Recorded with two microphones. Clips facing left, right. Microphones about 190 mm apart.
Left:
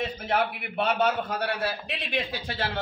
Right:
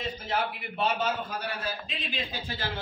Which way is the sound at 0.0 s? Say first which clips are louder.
Left 4 dB; 60° left (ahead or behind).